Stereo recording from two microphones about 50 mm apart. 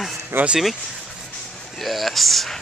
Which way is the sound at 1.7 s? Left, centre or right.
Centre.